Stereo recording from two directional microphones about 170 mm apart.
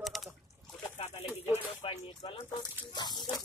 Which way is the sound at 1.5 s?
35° left (ahead or behind).